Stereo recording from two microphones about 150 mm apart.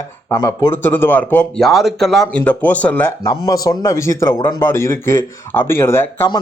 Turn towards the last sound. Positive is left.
turn(degrees=15)  # may be behind; listen again after turning